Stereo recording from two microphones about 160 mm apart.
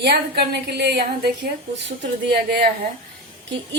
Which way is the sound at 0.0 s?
85° right.